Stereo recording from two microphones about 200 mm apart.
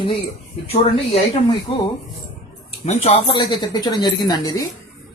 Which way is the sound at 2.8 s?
30° left (ahead or behind).